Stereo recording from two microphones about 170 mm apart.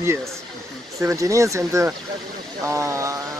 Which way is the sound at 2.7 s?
15° right (ahead or behind).